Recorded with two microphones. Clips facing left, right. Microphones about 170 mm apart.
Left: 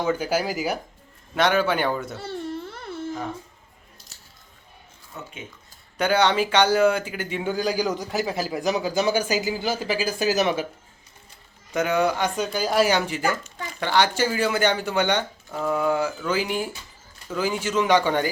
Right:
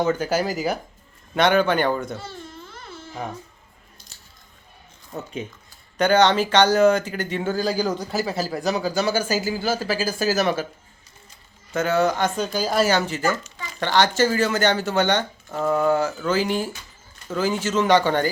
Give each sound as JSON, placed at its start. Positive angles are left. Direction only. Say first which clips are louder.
{"t": 0.0, "sound": "speech", "louder": "right 2 dB", "side_deg": 10}
{"t": 2.1, "sound": "baby cry", "louder": "left 6 dB", "side_deg": 65}
{"t": 5.1, "sound": "speech", "louder": "right 6 dB", "side_deg": -40}
{"t": 6.0, "sound": "speech", "louder": "right 3 dB", "side_deg": 10}
{"t": 11.7, "sound": "speech", "louder": "right 1 dB", "side_deg": 15}